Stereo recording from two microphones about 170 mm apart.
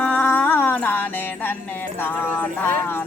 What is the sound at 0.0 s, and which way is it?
Music, 10° left (ahead or behind).